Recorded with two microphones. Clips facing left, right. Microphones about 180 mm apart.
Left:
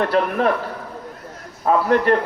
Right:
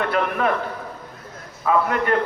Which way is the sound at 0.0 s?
35° left (ahead or behind).